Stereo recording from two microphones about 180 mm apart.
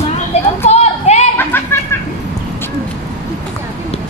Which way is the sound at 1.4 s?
10° left (ahead or behind).